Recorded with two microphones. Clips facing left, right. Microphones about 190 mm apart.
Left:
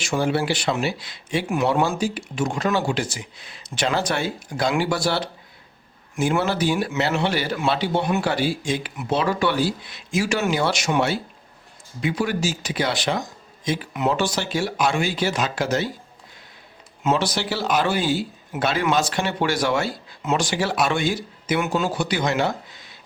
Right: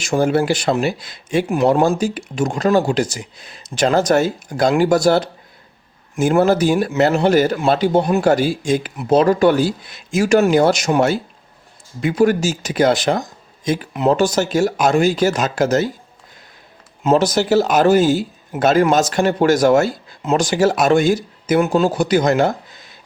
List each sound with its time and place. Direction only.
0.0 s speech: 45° right (ahead or behind)
17.0 s speech: 40° right (ahead or behind)